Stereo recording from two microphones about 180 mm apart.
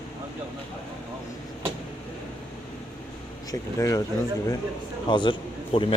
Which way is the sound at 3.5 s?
20° left (ahead or behind).